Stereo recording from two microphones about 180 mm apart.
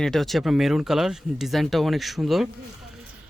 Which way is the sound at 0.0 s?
Centre (ahead or behind).